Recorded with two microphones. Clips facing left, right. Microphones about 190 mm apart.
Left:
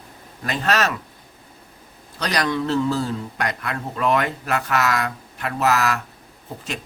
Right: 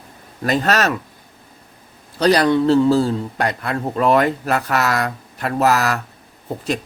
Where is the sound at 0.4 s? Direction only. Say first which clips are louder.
Right 4 dB; 40° right (ahead or behind).